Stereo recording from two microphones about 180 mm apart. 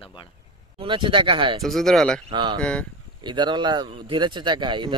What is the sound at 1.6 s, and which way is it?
Speech, centre (ahead or behind).